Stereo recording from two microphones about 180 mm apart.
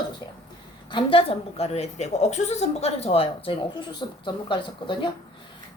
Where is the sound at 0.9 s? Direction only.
30° left (ahead or behind).